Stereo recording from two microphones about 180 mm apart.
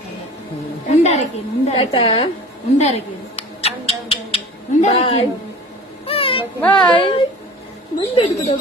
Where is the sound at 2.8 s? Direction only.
35° left (ahead or behind).